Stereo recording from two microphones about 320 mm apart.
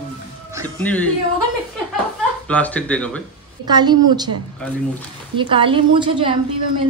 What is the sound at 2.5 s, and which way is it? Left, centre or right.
Speech, centre.